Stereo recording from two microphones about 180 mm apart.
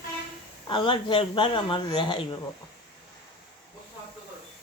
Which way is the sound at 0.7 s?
30° left (ahead or behind).